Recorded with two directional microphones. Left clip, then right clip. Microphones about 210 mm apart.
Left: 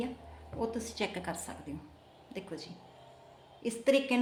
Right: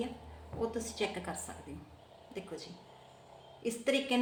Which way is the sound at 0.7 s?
45° left (ahead or behind).